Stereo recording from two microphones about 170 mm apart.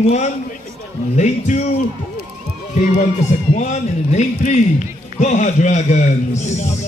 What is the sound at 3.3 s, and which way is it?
A man's voice, 40° left (ahead or behind).